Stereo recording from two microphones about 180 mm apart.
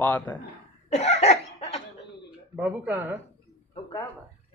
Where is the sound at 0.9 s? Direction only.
35° left (ahead or behind).